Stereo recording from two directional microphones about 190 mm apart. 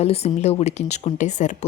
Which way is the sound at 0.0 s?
35° left (ahead or behind).